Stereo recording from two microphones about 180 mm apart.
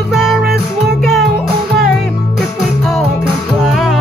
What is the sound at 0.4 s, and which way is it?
Music, 60° right (ahead or behind).